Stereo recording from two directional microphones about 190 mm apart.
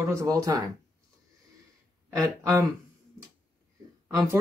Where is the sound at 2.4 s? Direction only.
15° right (ahead or behind).